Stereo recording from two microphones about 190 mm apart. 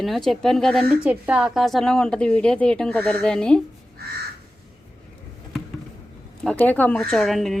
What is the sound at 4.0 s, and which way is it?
Crow, 55° right (ahead or behind).